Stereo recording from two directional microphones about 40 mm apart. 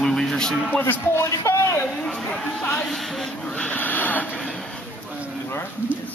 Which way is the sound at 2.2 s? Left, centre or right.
Centre.